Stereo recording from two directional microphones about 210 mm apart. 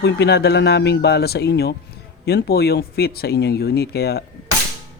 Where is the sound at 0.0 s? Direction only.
55° left (ahead or behind).